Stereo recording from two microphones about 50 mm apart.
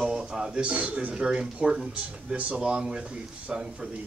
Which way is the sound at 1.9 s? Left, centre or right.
Right.